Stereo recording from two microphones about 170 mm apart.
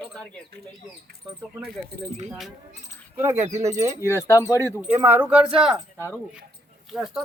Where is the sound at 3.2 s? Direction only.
15° right (ahead or behind).